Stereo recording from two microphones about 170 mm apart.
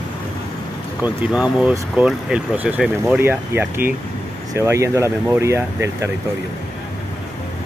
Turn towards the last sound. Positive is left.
turn(degrees=-15)  # may be behind; listen again after turning